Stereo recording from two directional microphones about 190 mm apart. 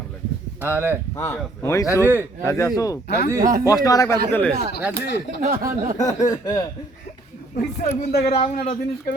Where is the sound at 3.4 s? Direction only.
45° right (ahead or behind).